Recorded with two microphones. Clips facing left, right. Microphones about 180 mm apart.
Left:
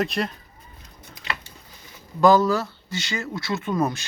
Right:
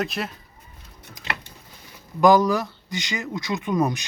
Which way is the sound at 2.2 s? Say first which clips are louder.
Even; 15° right (ahead or behind).